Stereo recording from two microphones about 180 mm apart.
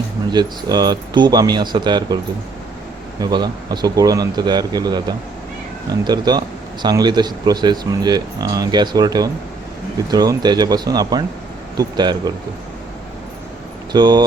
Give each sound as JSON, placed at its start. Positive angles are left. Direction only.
{"t": 0.3, "sound": "speech", "side_deg": -25}
{"t": 3.2, "sound": "speech", "side_deg": -20}
{"t": 13.9, "sound": "speech", "side_deg": -25}